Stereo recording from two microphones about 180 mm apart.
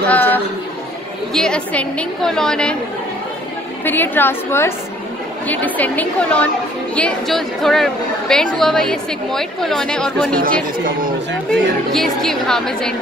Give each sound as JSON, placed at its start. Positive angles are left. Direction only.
{"t": 0.1, "sound": "chatter", "side_deg": 10}
{"t": 1.3, "sound": "a woman's voice", "side_deg": 5}
{"t": 3.8, "sound": "a woman's voice", "side_deg": 10}
{"t": 10.4, "sound": "speech", "side_deg": -50}
{"t": 11.9, "sound": "a woman's voice", "side_deg": 0}